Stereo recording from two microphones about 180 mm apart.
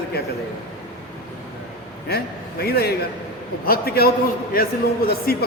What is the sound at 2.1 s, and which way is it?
A man's voice, 60° left (ahead or behind).